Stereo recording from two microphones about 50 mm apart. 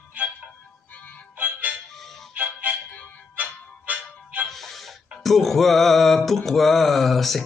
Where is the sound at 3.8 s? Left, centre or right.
Right.